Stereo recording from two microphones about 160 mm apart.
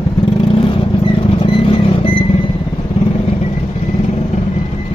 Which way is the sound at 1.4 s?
35° left (ahead or behind).